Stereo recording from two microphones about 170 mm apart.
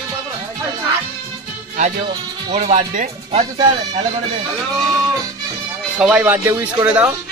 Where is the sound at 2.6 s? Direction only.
45° right (ahead or behind).